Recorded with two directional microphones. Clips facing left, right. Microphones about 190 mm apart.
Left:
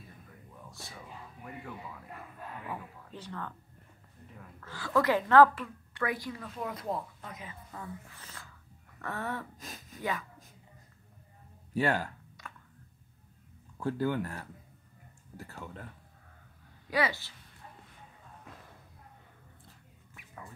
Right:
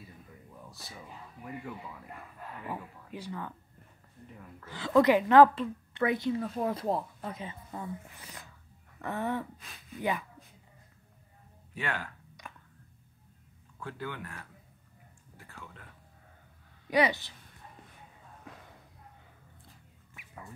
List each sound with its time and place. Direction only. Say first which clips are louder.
0.7 s whispering: left 1 dB; centre (ahead or behind)
2.7 s speech: right 2 dB; 10° right (ahead or behind)
4.6 s a woman's voice: right 5 dB; 20° right (ahead or behind)
9.6 s a sound: left 3 dB; 40° left (ahead or behind)
9.9 s a woman's voice: right 3 dB; 20° right (ahead or behind)
11.7 s speech: left 7 dB; 40° left (ahead or behind)
12.4 s a sound: right 1 dB; 15° right (ahead or behind)
13.7 s speech: left 9 dB; 40° left (ahead or behind)
15.3 s a sound: left 6 dB; 40° left (ahead or behind)
16.9 s a woman's voice: right 4 dB; 20° right (ahead or behind)